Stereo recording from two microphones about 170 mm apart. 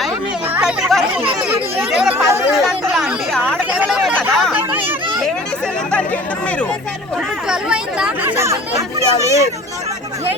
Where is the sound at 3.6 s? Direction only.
5° right (ahead or behind).